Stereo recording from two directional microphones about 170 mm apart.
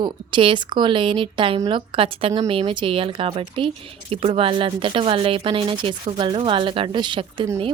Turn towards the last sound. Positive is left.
turn(degrees=-30)  # may be behind; listen again after turning